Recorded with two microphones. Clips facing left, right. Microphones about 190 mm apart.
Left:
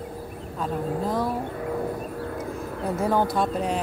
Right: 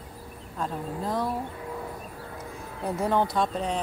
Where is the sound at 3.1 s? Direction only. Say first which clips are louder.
Left 2 dB; 5° left (ahead or behind).